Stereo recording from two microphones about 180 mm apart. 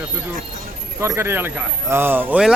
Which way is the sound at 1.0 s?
15° right (ahead or behind).